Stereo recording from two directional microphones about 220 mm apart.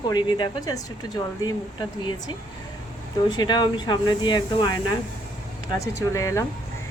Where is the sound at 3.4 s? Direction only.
20° left (ahead or behind).